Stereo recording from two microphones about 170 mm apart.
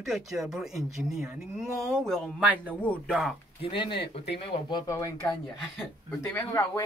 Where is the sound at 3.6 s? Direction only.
30° left (ahead or behind).